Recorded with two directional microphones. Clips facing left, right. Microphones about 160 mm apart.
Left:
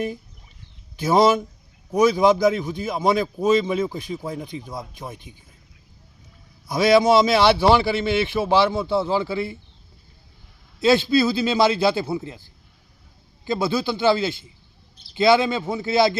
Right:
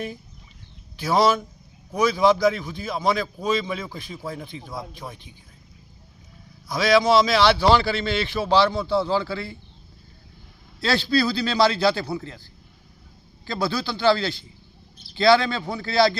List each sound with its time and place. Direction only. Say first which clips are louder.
1.0 s a man's voice: left 3 dB; 20° left (ahead or behind)
7.0 s a man's voice: left 2 dB; 20° left (ahead or behind)
10.8 s a man's voice: left 5 dB; 20° left (ahead or behind)
13.4 s a man's voice: left 4 dB; 20° left (ahead or behind)